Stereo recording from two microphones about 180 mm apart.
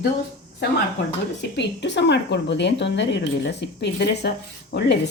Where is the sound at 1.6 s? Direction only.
75° left (ahead or behind).